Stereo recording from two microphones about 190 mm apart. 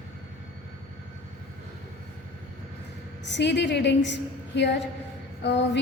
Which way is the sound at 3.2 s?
65° left (ahead or behind).